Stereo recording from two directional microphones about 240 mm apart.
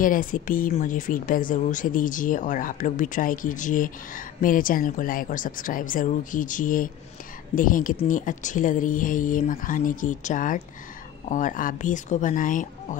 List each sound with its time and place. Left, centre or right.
0.0 s speech: left